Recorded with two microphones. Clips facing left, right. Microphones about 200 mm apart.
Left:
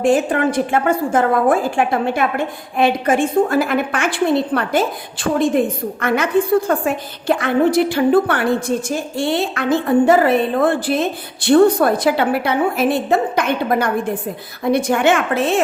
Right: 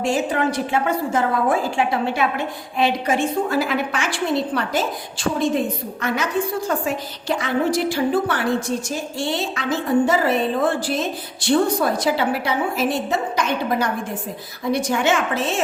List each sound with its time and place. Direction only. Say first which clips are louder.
0.0 s a woman's voice: left 5 dB; 50° left (ahead or behind)